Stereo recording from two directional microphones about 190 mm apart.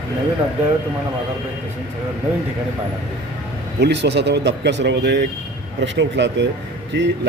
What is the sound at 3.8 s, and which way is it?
Speech, 65° right (ahead or behind).